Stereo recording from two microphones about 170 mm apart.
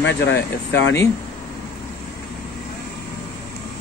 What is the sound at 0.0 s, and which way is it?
Speech, 85° left.